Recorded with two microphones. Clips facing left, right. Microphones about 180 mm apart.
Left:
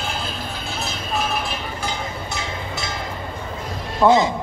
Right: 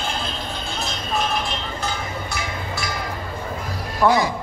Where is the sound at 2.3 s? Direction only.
25° left (ahead or behind).